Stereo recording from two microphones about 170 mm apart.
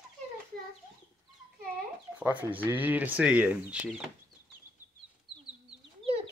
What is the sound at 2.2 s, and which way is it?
Speech, 10° right (ahead or behind).